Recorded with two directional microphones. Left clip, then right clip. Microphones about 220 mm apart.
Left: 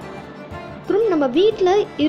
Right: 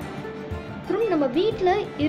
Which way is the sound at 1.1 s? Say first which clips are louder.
Left 5 dB; 25° left (ahead or behind).